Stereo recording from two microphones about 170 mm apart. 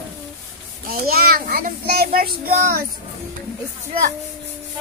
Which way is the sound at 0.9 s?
60° right (ahead or behind).